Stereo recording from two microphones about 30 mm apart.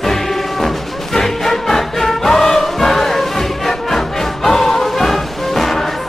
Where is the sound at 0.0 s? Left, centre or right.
Centre.